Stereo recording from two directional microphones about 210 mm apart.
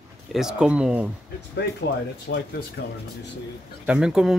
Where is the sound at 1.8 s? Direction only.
55° left (ahead or behind).